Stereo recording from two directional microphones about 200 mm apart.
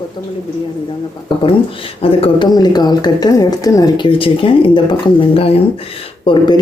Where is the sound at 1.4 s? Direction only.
25° left (ahead or behind).